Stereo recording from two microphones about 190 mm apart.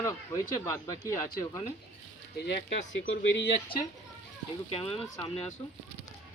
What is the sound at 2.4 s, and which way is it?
Speech, 60° left (ahead or behind).